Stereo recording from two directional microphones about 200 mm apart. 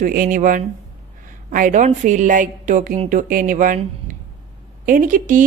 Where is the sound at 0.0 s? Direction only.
45° right (ahead or behind).